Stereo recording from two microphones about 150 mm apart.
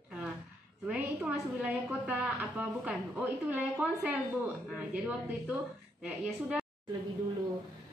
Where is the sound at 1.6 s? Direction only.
10° right (ahead or behind).